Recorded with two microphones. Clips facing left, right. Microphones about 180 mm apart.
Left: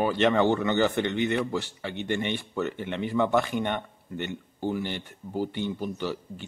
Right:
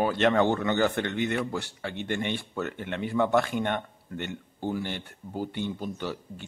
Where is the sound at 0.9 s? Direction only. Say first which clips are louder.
Left 2 dB; 15° left (ahead or behind).